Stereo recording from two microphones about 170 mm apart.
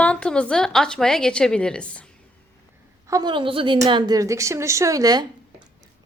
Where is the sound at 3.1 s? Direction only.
25° right (ahead or behind).